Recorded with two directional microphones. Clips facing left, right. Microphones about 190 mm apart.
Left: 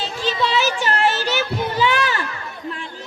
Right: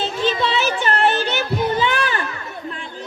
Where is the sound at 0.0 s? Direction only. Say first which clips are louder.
Right 4 dB; 55° right (ahead or behind).